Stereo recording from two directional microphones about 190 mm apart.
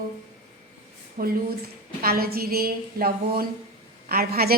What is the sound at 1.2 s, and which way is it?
A woman's voice, 45° right (ahead or behind).